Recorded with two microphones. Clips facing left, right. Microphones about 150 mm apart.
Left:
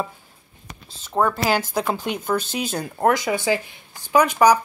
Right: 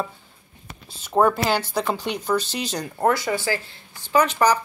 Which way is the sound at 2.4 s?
50° left (ahead or behind).